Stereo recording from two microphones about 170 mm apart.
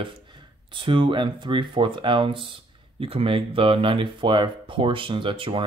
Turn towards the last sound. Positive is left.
turn(degrees=-30)  # may be behind; listen again after turning